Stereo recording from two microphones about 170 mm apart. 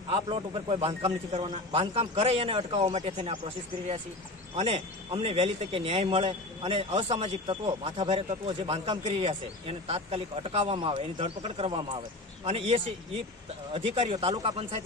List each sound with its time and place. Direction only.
0.1 s a man's voice: 30° right (ahead or behind)